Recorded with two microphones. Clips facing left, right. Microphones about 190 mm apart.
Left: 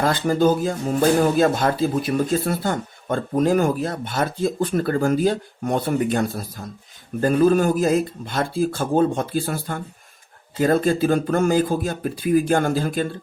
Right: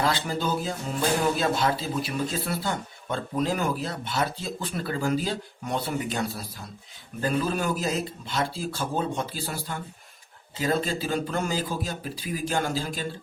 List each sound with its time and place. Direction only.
0.0 s speech: 50° left (ahead or behind)